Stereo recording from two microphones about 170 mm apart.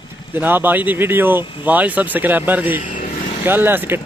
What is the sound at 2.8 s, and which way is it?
Vehicle, 50° left (ahead or behind).